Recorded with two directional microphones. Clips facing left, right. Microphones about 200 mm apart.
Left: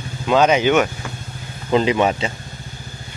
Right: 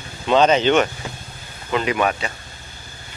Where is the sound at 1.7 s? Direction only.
25° left (ahead or behind).